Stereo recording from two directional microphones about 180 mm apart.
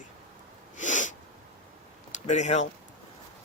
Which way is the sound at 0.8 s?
45° left (ahead or behind).